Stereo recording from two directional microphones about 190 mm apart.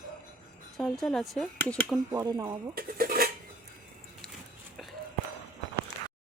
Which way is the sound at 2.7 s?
50° right (ahead or behind).